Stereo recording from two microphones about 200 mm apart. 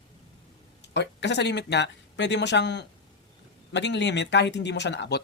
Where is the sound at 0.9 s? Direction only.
60° left (ahead or behind).